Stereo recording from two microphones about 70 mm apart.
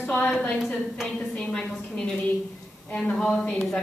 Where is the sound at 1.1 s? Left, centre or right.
Centre.